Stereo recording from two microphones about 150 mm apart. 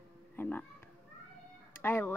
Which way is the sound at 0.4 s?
15° left (ahead or behind).